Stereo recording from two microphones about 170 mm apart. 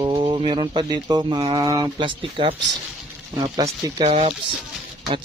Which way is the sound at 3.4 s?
20° right (ahead or behind).